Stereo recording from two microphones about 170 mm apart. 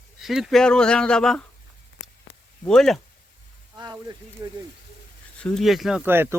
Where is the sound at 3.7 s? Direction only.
25° right (ahead or behind).